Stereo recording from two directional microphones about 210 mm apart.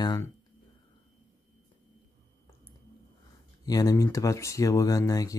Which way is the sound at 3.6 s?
15° left (ahead or behind).